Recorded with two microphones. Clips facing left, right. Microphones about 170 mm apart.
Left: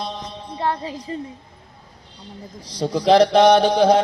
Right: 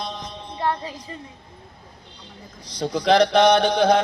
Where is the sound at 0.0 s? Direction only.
30° left (ahead or behind).